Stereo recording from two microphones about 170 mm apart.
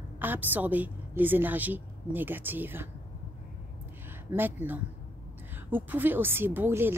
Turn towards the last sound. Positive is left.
turn(degrees=-15)  # may be behind; listen again after turning